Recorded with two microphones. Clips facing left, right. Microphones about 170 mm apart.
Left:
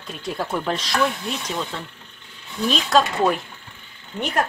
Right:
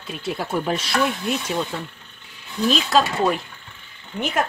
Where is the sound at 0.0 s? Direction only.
5° right (ahead or behind).